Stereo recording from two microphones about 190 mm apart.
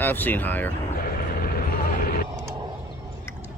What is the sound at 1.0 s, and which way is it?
Vehicle, 50° left (ahead or behind).